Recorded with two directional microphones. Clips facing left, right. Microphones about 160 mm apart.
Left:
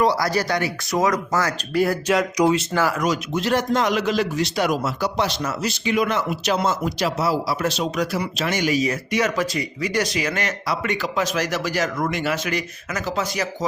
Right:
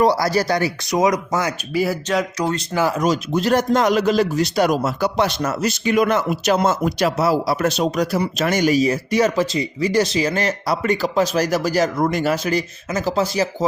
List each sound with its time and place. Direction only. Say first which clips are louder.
0.2 s speech: right 3 dB; 35° right (ahead or behind)
0.9 s speech: right 2 dB; 20° right (ahead or behind)
1.7 s speech: left 1 dB; 5° right (ahead or behind)
2.0 s speech: left 2 dB; 10° left (ahead or behind)
2.7 s speech: right 2 dB; 20° right (ahead or behind); by 4.9 s 40° right (ahead or behind)
4.9 s speech: right 4 dB; 55° right (ahead or behind); by 13.7 s 30° right (ahead or behind)